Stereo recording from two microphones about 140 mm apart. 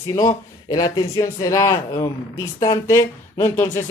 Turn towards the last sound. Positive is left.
turn(degrees=20)  # may be behind; listen again after turning